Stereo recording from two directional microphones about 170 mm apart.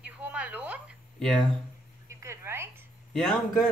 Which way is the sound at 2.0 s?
15° right (ahead or behind).